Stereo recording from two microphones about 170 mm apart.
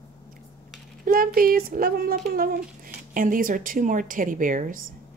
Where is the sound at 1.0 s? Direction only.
60° right (ahead or behind).